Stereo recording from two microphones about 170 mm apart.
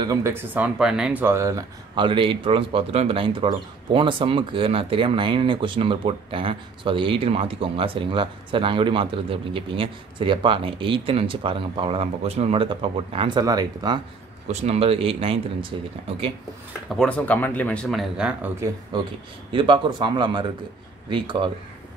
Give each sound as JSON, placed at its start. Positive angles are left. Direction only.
{"t": 0.0, "sound": "speech", "side_deg": -20}
{"t": 2.0, "sound": "speech", "side_deg": -30}
{"t": 14.5, "sound": "speech", "side_deg": -35}
{"t": 16.9, "sound": "speech", "side_deg": 5}
{"t": 18.9, "sound": "speech", "side_deg": -25}